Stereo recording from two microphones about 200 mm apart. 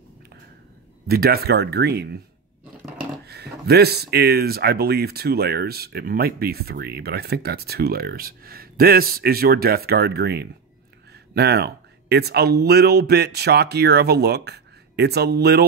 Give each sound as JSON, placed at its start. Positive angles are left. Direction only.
{"t": 1.0, "sound": "speech", "side_deg": -50}